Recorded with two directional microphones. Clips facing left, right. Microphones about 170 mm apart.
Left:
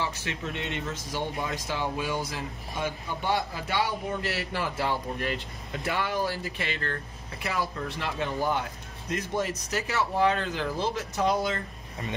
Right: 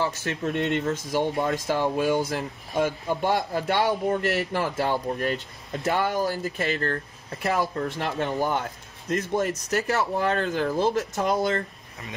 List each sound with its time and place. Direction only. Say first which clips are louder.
0.0 s speech: right 6 dB; 50° right (ahead or behind)